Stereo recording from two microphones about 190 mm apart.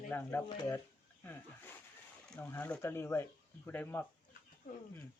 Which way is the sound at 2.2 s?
10° left (ahead or behind).